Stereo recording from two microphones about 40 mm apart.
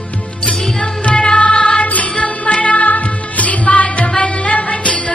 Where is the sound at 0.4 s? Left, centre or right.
Left.